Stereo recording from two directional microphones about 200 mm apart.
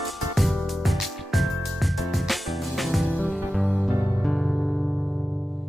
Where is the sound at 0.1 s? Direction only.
Centre (ahead or behind).